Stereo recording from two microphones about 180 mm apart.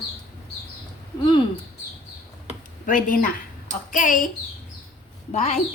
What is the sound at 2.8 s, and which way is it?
Speech, 50° left (ahead or behind).